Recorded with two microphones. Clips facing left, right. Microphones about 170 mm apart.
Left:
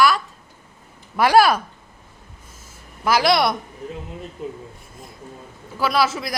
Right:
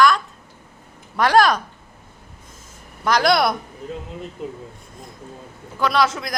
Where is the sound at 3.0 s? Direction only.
5° left (ahead or behind).